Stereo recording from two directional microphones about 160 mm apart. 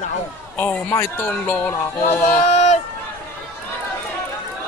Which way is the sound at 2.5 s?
45° left (ahead or behind).